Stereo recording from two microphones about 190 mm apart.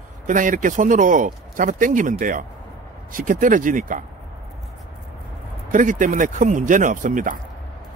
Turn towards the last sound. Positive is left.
turn(degrees=-45)  # may be behind; listen again after turning